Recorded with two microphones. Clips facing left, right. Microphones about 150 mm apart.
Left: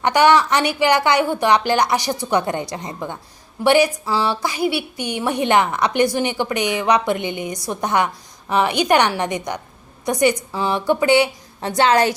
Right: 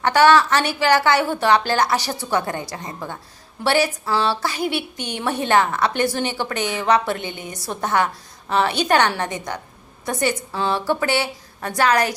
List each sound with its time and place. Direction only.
0.0 s a woman's voice: 15° left (ahead or behind)